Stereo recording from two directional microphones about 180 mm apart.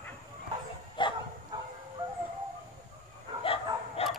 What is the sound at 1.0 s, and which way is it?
Dog, 25° left (ahead or behind).